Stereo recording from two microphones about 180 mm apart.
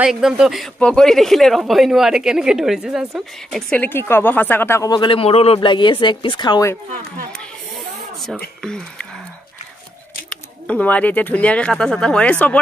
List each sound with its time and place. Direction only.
0.0 s speech: 5° right (ahead or behind)
3.7 s speech: 10° left (ahead or behind)
7.3 s snake: centre (ahead or behind)
8.6 s speech: 5° left (ahead or behind)
10.3 s speech: 5° left (ahead or behind)